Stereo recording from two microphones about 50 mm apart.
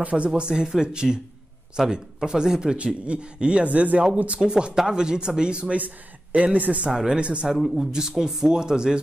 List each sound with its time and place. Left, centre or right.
0.0 s speech: right
4.4 s speech: centre
6.9 s speech: centre